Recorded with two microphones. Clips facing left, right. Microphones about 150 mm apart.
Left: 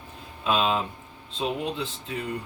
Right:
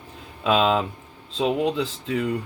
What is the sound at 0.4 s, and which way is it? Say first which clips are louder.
Speech: right 5 dB; 90° right.